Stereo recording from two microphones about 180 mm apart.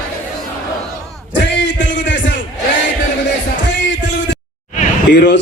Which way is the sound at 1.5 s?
85° left.